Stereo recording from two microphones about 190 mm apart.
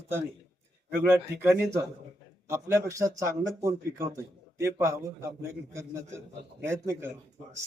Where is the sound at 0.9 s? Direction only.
15° right (ahead or behind).